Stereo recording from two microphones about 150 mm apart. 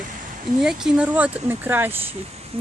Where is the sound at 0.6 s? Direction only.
5° right (ahead or behind).